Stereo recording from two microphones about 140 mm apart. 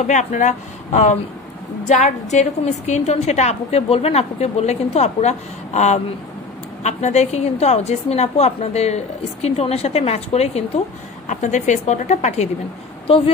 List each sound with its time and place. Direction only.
0.0 s a woman's voice: 60° left (ahead or behind)
11.2 s a woman's voice: 60° left (ahead or behind)